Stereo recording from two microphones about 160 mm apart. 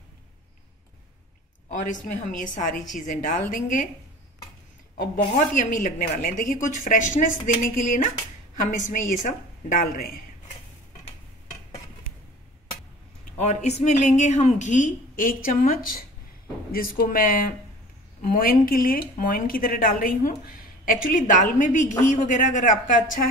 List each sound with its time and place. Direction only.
1.7 s a woman's voice: 55° left (ahead or behind)
4.9 s a woman's voice: 55° left (ahead or behind)
13.4 s a woman's voice: 45° left (ahead or behind)